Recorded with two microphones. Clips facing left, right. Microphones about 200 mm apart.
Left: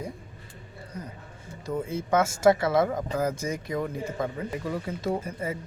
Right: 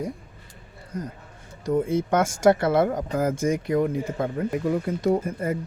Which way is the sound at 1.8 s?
50° right (ahead or behind).